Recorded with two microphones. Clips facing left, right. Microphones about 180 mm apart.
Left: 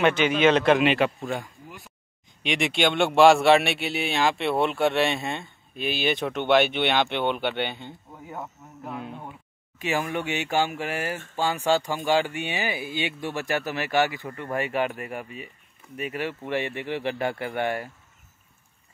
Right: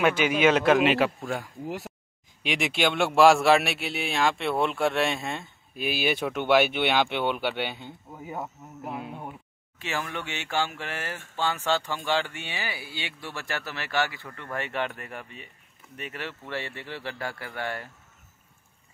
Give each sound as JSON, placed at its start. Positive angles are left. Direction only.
{"t": 0.0, "sound": "a man's voice", "side_deg": -10}
{"t": 9.8, "sound": "speech", "side_deg": 15}